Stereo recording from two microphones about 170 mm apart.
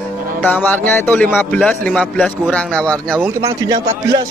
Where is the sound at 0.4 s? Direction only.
10° left (ahead or behind).